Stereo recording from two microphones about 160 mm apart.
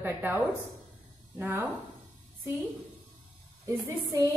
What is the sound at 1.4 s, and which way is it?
Speech, 10° right (ahead or behind).